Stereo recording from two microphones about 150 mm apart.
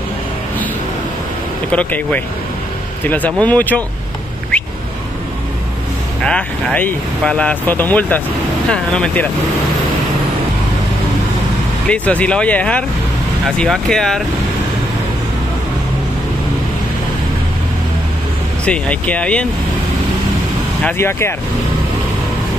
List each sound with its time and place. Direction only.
1.7 s speech: 10° left (ahead or behind)
6.2 s speech: 10° left (ahead or behind)
11.9 s speech: 10° left (ahead or behind)
18.7 s speech: 10° left (ahead or behind)
20.8 s speech: 15° left (ahead or behind)